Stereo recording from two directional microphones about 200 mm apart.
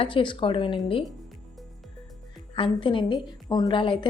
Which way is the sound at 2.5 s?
25° left (ahead or behind).